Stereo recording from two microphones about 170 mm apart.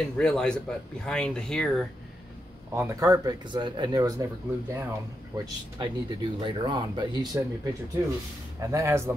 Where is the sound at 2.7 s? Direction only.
15° right (ahead or behind).